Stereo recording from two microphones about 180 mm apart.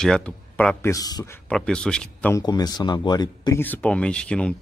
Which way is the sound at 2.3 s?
20° left (ahead or behind).